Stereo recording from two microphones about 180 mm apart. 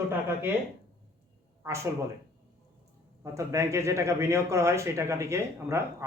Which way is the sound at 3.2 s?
15° right (ahead or behind).